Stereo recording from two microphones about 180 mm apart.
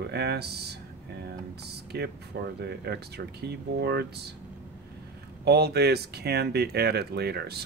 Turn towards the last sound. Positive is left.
turn(degrees=-65)  # may be behind; listen again after turning